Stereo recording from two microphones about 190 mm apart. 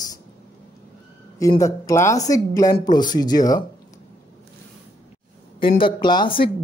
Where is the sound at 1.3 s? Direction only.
15° left (ahead or behind).